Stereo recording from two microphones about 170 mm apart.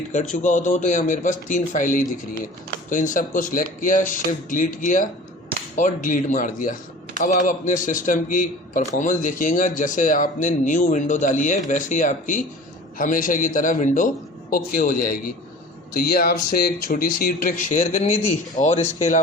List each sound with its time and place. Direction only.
0.1 s speech: 45° left (ahead or behind)